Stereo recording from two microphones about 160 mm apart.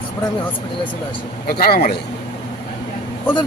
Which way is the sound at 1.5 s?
75° left (ahead or behind).